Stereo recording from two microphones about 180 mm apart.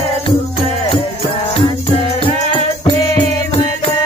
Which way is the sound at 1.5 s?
30° left (ahead or behind).